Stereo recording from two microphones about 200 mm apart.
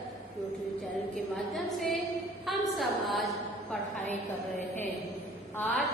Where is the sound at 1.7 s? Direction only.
Centre (ahead or behind).